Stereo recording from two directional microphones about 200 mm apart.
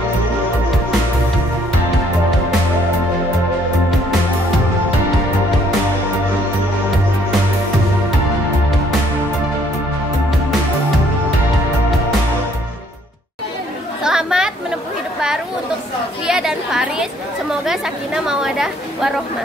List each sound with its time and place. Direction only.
14.0 s chatter: 5° right (ahead or behind)
16.3 s chatter: centre (ahead or behind)